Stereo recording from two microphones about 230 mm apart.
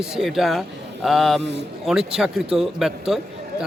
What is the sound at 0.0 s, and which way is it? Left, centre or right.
A man's voice, centre.